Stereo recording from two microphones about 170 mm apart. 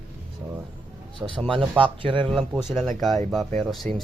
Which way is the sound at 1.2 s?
15° right (ahead or behind).